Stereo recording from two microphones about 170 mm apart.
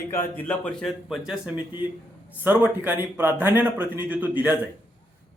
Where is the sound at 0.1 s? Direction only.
10° left (ahead or behind).